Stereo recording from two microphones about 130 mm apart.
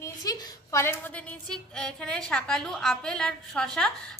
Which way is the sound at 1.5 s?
5° left (ahead or behind).